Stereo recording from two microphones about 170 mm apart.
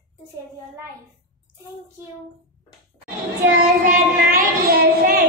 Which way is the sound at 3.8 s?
55° right (ahead or behind).